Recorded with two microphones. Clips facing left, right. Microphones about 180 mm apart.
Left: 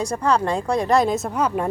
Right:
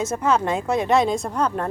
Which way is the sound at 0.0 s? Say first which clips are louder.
Even; 5° right (ahead or behind).